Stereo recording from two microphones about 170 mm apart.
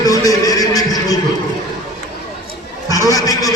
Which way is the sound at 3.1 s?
20° left (ahead or behind).